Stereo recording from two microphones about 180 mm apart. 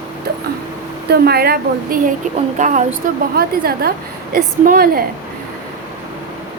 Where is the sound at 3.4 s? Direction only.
60° right (ahead or behind).